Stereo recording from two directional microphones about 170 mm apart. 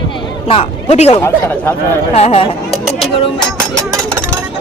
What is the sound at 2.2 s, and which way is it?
Speech, 35° left (ahead or behind).